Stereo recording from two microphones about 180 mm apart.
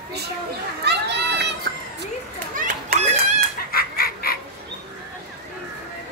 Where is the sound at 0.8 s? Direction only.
70° right (ahead or behind).